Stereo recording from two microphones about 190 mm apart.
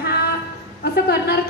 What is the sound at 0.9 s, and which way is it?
Speech, 55° left (ahead or behind).